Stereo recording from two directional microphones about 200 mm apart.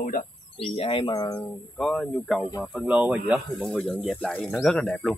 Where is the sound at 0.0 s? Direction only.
40° left (ahead or behind).